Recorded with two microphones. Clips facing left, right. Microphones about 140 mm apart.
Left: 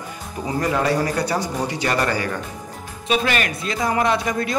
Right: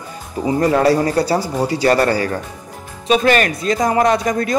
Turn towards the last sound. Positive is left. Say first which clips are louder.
# right 5 dB
turn(degrees=-45)  # may be behind; listen again after turning